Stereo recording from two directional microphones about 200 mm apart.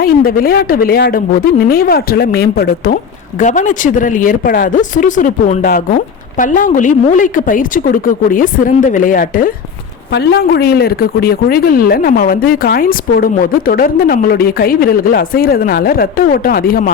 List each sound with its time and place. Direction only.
0.0 s speech: 45° left (ahead or behind)
10.1 s speech: 55° left (ahead or behind)